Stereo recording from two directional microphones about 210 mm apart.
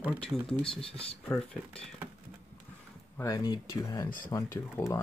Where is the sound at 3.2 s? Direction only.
15° left (ahead or behind).